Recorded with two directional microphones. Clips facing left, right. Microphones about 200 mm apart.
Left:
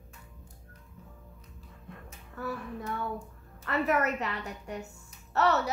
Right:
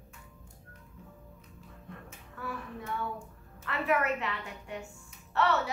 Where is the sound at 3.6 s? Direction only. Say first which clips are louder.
Left 2 dB; 40° left (ahead or behind).